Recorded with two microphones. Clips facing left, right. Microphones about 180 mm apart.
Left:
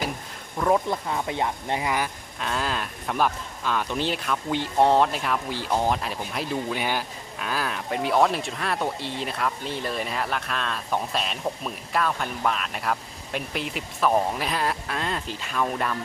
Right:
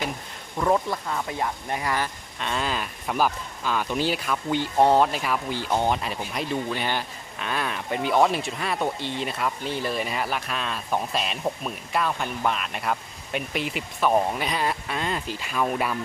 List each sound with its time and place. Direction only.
0.9 s speech: 20° left (ahead or behind)
2.4 s speech: centre (ahead or behind)